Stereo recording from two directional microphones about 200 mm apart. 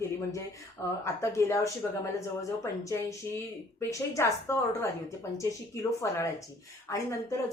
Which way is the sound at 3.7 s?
15° left (ahead or behind).